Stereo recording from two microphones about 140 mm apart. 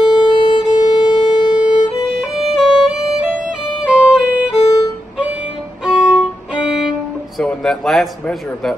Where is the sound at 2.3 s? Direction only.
5° right (ahead or behind).